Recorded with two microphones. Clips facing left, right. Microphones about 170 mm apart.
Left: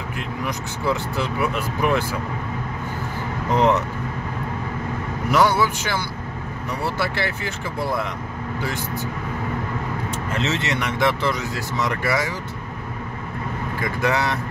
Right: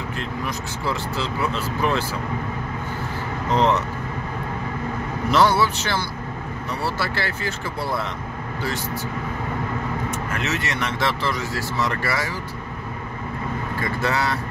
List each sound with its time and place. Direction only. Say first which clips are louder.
0.5 s speech: left 6 dB; 15° left (ahead or behind)
3.5 s speech: left 1 dB; 15° left (ahead or behind)
5.3 s speech: even; 15° left (ahead or behind)
10.4 s speech: left 3 dB; 25° left (ahead or behind)
13.7 s speech: left 2 dB; 15° left (ahead or behind)